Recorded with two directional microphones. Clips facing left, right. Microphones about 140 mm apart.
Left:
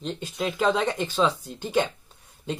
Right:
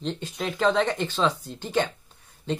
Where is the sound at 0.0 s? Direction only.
10° left (ahead or behind).